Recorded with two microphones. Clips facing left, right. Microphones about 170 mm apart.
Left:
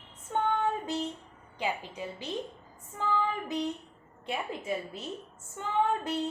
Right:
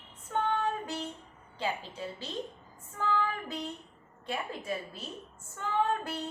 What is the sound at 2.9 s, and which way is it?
Female singing, 20° left (ahead or behind).